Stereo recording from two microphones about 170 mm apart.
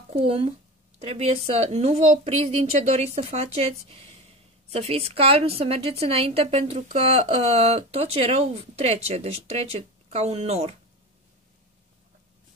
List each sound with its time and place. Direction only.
0.1 s a woman's voice: 35° right (ahead or behind)